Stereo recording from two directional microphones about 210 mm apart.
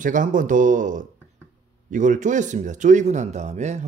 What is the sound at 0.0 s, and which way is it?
Speech, 35° right (ahead or behind).